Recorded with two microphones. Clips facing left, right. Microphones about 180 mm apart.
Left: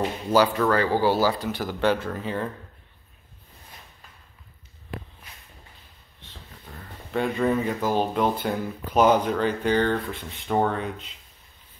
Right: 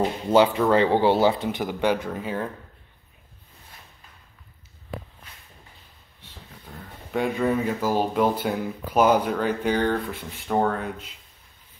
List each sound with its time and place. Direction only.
0.3 s speech: 25° right (ahead or behind); by 2.5 s 10° right (ahead or behind)
6.2 s speech: 5° right (ahead or behind)